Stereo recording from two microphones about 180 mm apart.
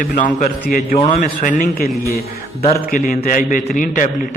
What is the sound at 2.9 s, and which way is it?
A man's voice, 50° left (ahead or behind).